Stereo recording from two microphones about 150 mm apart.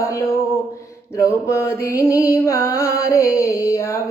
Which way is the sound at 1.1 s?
20° left (ahead or behind).